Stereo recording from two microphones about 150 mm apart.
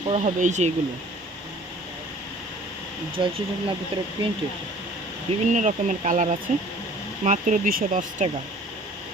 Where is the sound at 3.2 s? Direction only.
30° right (ahead or behind).